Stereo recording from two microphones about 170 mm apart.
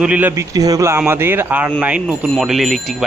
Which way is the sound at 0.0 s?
10° right (ahead or behind).